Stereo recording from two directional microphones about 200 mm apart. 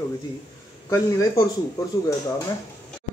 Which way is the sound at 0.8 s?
15° left (ahead or behind).